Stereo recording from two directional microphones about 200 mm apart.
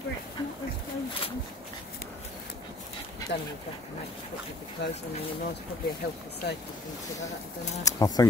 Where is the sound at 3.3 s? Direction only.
55° left (ahead or behind).